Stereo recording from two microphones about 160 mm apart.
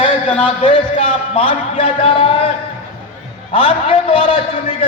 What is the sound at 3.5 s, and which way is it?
Speech, 35° left (ahead or behind).